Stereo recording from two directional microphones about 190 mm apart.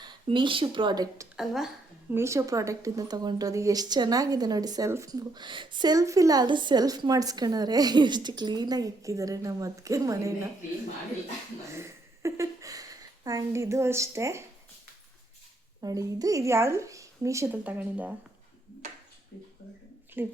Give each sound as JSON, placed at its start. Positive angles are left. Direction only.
{"t": 0.0, "sound": "a woman's voice", "side_deg": -25}
{"t": 1.4, "sound": "a woman's voice", "side_deg": 0}
{"t": 2.1, "sound": "speech", "side_deg": -15}
{"t": 11.7, "sound": "speech", "side_deg": -15}
{"t": 15.8, "sound": "a woman's voice", "side_deg": -20}
{"t": 20.2, "sound": "a woman's voice", "side_deg": -10}